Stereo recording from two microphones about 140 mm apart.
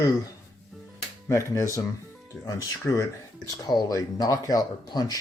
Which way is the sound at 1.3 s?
20° left (ahead or behind).